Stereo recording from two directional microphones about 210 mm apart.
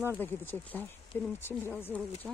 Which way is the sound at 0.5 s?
10° left (ahead or behind).